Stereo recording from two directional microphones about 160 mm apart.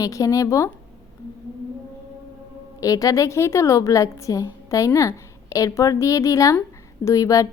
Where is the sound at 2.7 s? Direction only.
20° left (ahead or behind).